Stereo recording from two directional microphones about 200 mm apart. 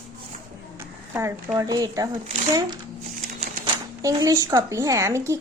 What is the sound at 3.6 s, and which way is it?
Speech, 15° right (ahead or behind).